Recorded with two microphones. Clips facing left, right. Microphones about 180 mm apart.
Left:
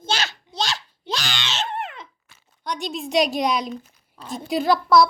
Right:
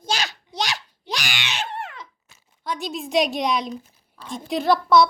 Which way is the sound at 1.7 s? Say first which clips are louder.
Left 3 dB; 20° left (ahead or behind).